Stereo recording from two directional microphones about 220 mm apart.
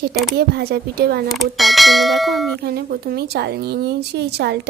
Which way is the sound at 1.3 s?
Centre (ahead or behind).